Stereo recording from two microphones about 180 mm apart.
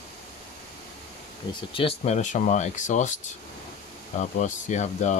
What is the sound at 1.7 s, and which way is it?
Speech, 35° left (ahead or behind).